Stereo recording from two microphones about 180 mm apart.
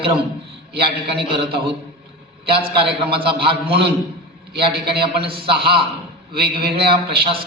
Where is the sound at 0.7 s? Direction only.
65° right (ahead or behind).